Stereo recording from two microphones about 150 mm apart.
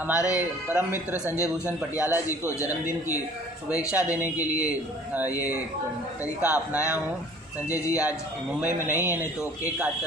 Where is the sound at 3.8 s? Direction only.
10° right (ahead or behind).